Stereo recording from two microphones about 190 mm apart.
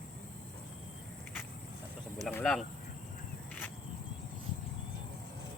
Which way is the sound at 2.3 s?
5° left (ahead or behind).